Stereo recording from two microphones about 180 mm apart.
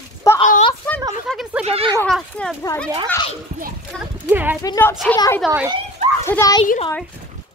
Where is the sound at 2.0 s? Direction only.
5° left (ahead or behind).